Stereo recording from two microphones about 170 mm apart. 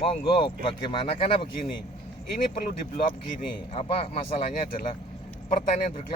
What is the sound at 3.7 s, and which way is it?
Speech, 35° left (ahead or behind).